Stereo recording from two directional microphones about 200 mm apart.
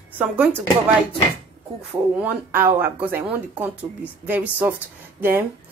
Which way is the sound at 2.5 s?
10° right (ahead or behind).